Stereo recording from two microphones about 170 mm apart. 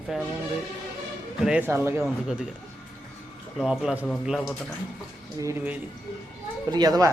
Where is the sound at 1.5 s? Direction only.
10° right (ahead or behind).